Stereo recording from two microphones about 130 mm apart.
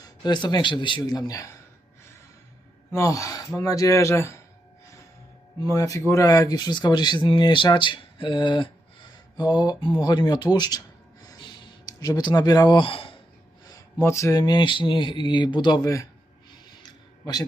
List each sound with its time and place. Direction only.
0.2 s speech: 35° left (ahead or behind)
2.9 s speech: 25° left (ahead or behind)
5.5 s speech: 25° left (ahead or behind); by 13.1 s 40° left (ahead or behind)
14.0 s speech: 20° left (ahead or behind)